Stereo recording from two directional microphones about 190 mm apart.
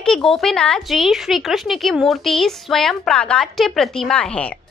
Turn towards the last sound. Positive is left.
turn(degrees=5)  # may be behind; listen again after turning